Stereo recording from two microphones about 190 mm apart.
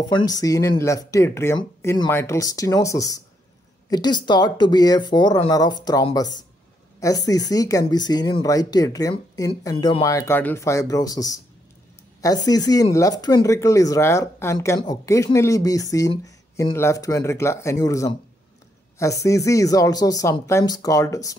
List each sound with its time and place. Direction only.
0.0 s speech: 20° left (ahead or behind)